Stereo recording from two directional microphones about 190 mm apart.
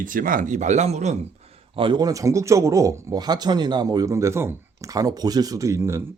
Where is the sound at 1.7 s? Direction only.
25° right (ahead or behind).